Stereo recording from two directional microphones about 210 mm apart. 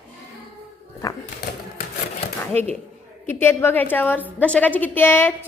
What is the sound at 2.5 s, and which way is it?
A woman's voice, 10° left (ahead or behind).